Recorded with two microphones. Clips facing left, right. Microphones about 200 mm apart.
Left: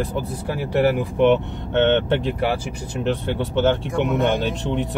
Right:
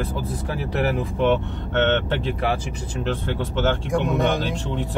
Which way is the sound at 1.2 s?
20° left (ahead or behind).